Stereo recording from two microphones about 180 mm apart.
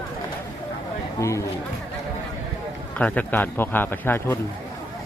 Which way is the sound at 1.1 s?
15° left (ahead or behind).